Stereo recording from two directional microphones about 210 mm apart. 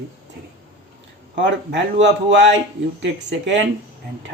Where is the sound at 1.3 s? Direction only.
60° right (ahead or behind).